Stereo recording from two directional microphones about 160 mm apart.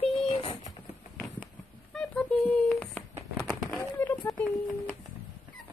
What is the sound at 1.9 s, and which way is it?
Speech, 5° left (ahead or behind).